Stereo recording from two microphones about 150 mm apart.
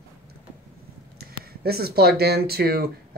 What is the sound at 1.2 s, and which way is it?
Speech, 90° right.